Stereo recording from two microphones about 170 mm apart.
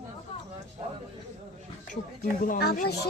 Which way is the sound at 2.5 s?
60° left (ahead or behind).